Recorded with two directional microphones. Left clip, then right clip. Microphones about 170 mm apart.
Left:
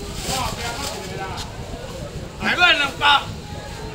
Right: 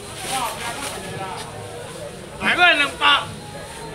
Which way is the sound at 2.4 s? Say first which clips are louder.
Right 1 dB; 15° right (ahead or behind).